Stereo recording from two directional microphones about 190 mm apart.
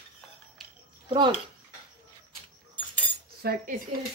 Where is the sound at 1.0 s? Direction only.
25° right (ahead or behind).